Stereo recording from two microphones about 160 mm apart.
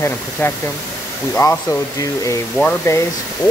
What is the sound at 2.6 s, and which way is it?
Speech, 10° left (ahead or behind).